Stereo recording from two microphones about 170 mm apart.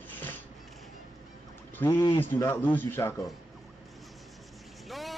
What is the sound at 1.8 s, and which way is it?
Speech, 15° left (ahead or behind).